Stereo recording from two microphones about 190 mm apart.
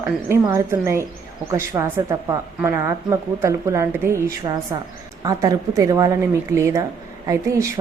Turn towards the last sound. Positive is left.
turn(degrees=-15)  # may be behind; listen again after turning